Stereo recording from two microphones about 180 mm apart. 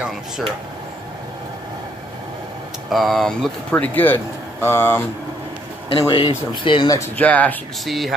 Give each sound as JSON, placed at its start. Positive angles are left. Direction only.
{"t": 2.9, "sound": "speech", "side_deg": 0}
{"t": 5.9, "sound": "speech", "side_deg": 25}
{"t": 7.0, "sound": "speech", "side_deg": 10}